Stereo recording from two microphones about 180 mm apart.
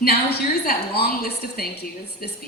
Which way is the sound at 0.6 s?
60° left (ahead or behind).